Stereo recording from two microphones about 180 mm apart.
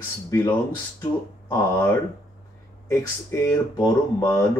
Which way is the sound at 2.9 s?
15° left (ahead or behind).